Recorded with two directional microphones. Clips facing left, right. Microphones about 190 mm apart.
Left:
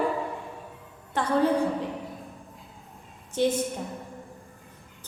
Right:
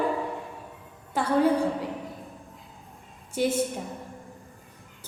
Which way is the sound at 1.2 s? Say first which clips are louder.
Even; 10° right (ahead or behind).